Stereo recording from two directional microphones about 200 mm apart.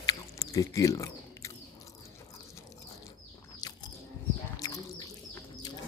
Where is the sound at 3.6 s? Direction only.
20° left (ahead or behind).